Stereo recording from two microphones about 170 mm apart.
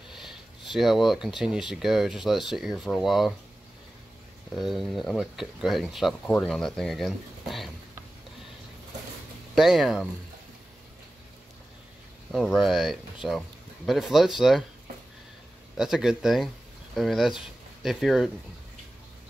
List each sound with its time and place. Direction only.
0.1 s speech: centre (ahead or behind)
4.6 s speech: centre (ahead or behind)
9.6 s speech: centre (ahead or behind)
12.3 s speech: centre (ahead or behind)
15.8 s speech: 5° right (ahead or behind)